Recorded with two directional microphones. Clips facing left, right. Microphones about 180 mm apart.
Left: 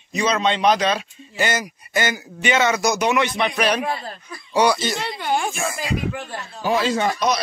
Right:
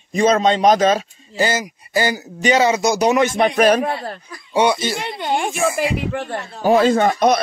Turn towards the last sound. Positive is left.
turn(degrees=-55)  # may be behind; listen again after turning